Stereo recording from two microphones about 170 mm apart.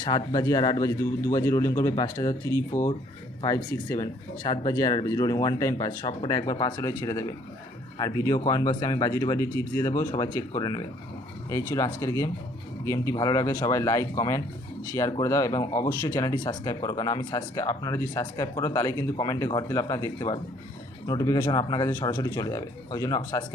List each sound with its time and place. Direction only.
0.3 s speech: 20° left (ahead or behind)